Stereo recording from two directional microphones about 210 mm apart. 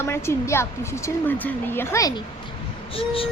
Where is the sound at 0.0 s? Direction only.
10° left (ahead or behind).